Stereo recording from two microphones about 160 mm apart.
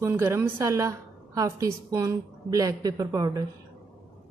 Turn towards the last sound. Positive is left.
turn(degrees=-20)  # may be behind; listen again after turning